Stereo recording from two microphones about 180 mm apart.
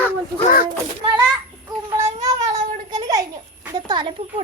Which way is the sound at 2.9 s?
20° right (ahead or behind).